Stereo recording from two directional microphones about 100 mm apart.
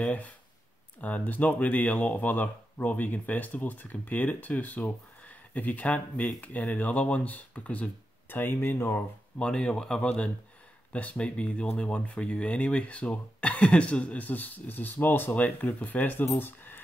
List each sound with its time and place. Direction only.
0.0 s speech: 15° left (ahead or behind)
9.4 s speech: 10° left (ahead or behind)
16.3 s a sound: 20° left (ahead or behind)